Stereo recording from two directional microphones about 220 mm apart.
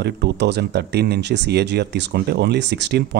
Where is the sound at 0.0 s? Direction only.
50° right (ahead or behind).